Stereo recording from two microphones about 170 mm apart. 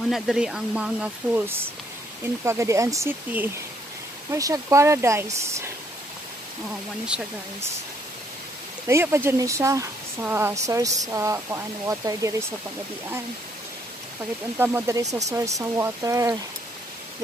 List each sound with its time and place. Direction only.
0.1 s speech: centre (ahead or behind)
7.1 s speech: 5° right (ahead or behind)
8.8 s speech: 15° right (ahead or behind)
14.6 s speech: 10° right (ahead or behind)